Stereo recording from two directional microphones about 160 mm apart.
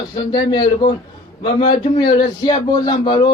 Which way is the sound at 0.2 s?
25° left (ahead or behind).